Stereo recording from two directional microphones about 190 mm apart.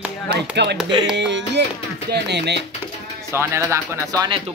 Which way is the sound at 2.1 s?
65° right (ahead or behind).